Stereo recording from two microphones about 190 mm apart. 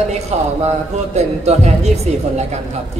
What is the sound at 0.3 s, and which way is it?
Speech, 35° right (ahead or behind).